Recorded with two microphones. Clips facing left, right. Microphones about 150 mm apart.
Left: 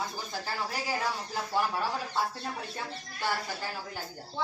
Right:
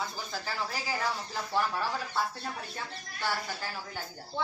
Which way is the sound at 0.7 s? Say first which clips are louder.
Left 1 dB; 5° left (ahead or behind).